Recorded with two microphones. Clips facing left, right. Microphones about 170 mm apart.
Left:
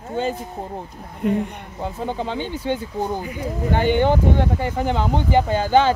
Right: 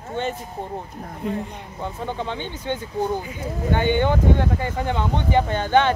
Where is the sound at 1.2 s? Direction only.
65° left (ahead or behind).